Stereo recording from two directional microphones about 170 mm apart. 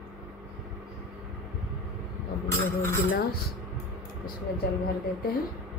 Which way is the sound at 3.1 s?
65° left (ahead or behind).